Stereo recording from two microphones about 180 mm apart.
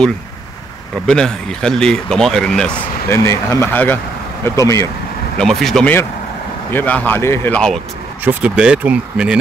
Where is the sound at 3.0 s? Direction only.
15° left (ahead or behind).